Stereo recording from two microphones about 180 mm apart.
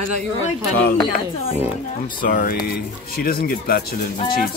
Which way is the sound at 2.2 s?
50° left (ahead or behind).